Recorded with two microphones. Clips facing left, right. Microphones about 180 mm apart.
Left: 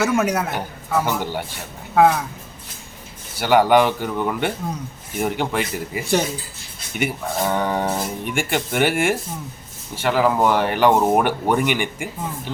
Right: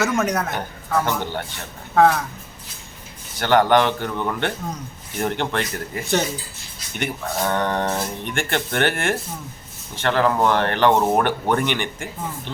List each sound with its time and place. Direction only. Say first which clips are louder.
0.0 s a man's voice: left 2 dB; 10° left (ahead or behind)
3.3 s a man's voice: left 1 dB; 10° left (ahead or behind)